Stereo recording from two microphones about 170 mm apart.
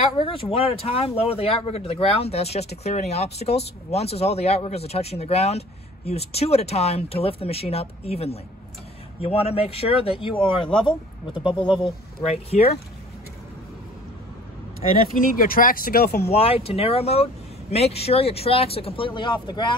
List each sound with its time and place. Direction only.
0.1 s speech: 30° left (ahead or behind)
15.3 s speech: 55° left (ahead or behind)
16.3 s speech: 35° left (ahead or behind)